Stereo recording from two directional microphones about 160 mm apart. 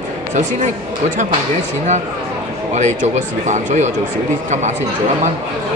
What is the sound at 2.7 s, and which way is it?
Speech, 50° right (ahead or behind).